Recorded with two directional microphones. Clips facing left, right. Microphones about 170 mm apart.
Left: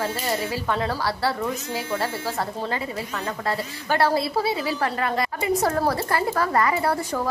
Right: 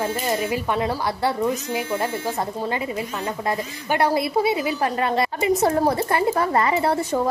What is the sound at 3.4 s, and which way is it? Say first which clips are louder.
A woman's voice: right 1 dB; 15° right (ahead or behind).